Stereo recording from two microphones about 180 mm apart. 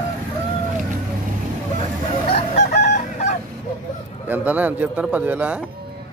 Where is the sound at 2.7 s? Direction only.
65° left (ahead or behind).